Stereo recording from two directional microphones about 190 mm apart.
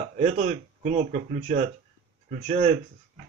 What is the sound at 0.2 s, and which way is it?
Speech, 35° right (ahead or behind).